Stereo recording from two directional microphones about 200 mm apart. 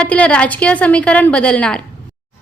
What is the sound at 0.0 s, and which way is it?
A woman's voice, 5° left (ahead or behind).